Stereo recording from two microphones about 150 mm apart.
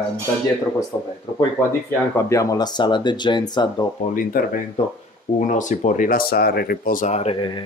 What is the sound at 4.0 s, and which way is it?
Speech, 65° left (ahead or behind).